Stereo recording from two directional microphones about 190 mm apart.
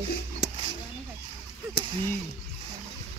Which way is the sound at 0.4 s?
65° left (ahead or behind).